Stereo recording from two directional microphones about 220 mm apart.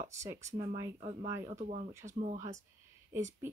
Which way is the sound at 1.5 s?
35° right (ahead or behind).